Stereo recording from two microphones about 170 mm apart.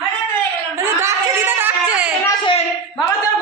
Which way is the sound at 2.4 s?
30° left (ahead or behind).